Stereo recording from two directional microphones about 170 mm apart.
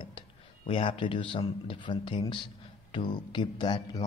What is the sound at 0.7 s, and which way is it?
A man's voice, 30° left (ahead or behind).